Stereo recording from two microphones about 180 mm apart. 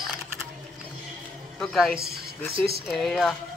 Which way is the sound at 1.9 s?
60° right (ahead or behind).